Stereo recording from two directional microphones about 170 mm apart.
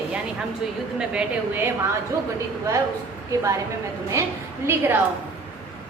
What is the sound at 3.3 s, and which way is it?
A woman's voice, 20° right (ahead or behind).